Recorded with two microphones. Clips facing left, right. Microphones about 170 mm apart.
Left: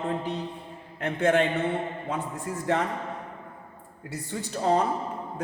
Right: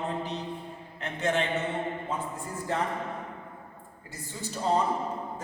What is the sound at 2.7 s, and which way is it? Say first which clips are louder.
Speech: left 4 dB; 75° left (ahead or behind).